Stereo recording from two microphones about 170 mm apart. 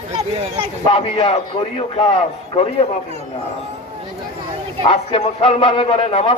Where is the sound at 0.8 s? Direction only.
35° left (ahead or behind).